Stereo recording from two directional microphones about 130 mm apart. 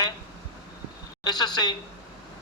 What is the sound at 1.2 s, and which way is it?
Speech, 30° left (ahead or behind).